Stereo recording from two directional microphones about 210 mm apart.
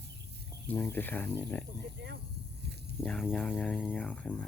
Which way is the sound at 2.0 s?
55° right (ahead or behind).